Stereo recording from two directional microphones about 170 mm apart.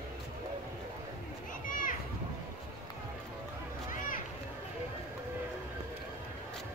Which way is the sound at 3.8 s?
50° left (ahead or behind).